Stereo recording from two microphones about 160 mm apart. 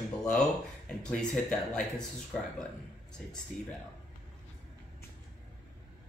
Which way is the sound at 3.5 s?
50° left (ahead or behind).